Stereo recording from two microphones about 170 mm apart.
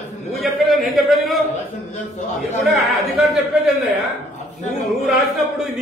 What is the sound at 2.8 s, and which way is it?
Speech, centre (ahead or behind).